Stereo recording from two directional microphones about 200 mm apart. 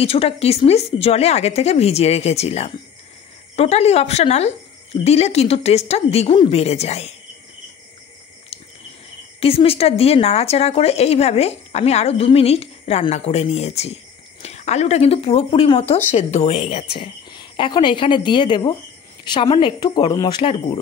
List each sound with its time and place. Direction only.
0.0 s speech: 30° left (ahead or behind)
9.4 s a woman's voice: 30° left (ahead or behind)